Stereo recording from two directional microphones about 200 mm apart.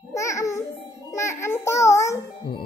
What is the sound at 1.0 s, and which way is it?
A child's voice, 15° left (ahead or behind).